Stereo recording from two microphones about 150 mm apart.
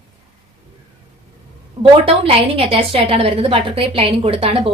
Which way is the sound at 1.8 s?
40° right (ahead or behind).